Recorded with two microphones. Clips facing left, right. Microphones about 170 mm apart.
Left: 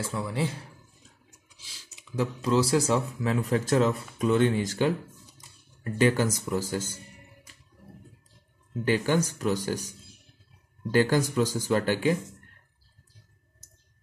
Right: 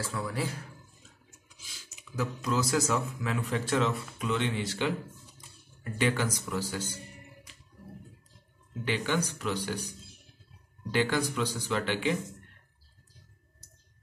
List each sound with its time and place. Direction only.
0.0 s a man's voice: 25° left (ahead or behind)
1.6 s speech: 30° left (ahead or behind)
5.9 s speech: 40° left (ahead or behind)
8.8 s speech: 40° left (ahead or behind)